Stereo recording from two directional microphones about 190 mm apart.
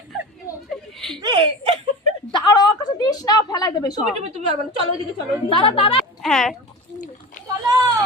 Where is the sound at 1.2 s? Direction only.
25° right (ahead or behind).